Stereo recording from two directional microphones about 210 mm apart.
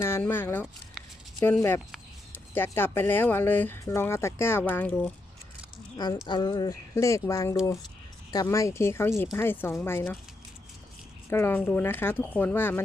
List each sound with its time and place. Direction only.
0.0 s speech: 10° left (ahead or behind)
6.2 s speech: 20° left (ahead or behind)
11.3 s speech: 10° left (ahead or behind)